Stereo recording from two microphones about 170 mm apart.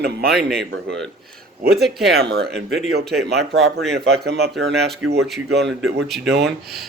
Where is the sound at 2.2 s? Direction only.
70° right (ahead or behind).